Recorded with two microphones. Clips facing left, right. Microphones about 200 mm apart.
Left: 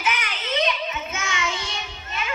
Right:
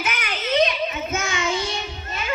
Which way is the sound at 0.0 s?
45° right (ahead or behind).